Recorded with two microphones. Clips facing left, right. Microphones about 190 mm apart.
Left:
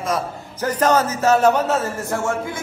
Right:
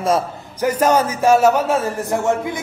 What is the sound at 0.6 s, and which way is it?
A man's voice, 10° right (ahead or behind).